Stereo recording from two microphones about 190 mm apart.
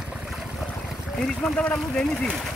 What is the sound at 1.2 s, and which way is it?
Speech, centre (ahead or behind).